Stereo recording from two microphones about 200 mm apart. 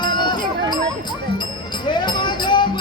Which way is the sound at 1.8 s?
20° left (ahead or behind).